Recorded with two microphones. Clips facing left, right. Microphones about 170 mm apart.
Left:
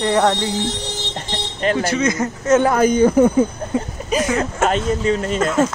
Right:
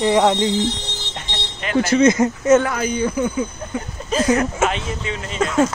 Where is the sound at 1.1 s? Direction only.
40° left (ahead or behind).